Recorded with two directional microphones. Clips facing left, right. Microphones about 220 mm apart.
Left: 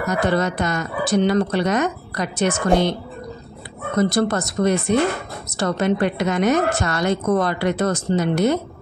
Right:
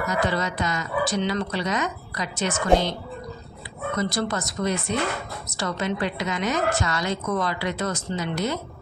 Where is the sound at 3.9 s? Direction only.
55° left (ahead or behind).